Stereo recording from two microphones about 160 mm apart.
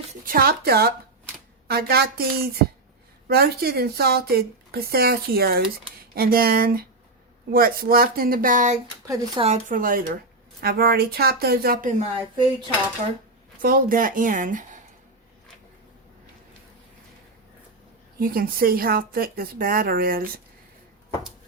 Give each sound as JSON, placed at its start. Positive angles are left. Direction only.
{"t": 0.3, "sound": "a woman's voice", "side_deg": -70}
{"t": 9.0, "sound": "speech", "side_deg": -20}
{"t": 9.4, "sound": "speech", "side_deg": -50}
{"t": 10.6, "sound": "a woman's voice", "side_deg": -70}
{"t": 13.6, "sound": "speech", "side_deg": -65}
{"t": 18.2, "sound": "speech", "side_deg": -65}